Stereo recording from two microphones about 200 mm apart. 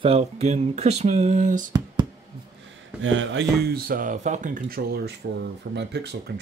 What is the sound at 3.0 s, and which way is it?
Speech, 70° right (ahead or behind).